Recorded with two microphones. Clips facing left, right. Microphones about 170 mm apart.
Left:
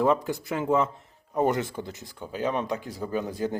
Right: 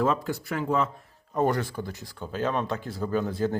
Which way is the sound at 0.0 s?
15° left (ahead or behind).